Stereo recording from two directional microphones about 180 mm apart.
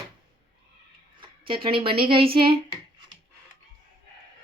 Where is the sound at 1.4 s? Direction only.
30° right (ahead or behind).